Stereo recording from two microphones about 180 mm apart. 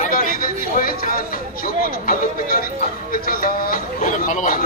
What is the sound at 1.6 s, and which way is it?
A man's voice, 55° left (ahead or behind).